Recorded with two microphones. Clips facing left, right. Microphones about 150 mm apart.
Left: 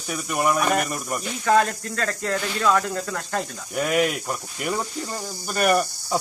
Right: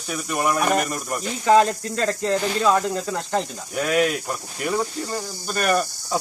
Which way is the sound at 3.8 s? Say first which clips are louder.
Right 1 dB; 5° left (ahead or behind).